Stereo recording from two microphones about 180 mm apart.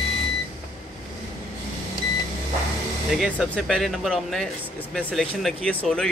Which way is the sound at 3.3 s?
5° left (ahead or behind).